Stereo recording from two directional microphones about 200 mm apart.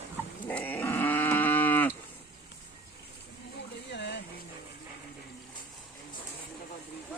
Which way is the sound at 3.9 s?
60° left (ahead or behind).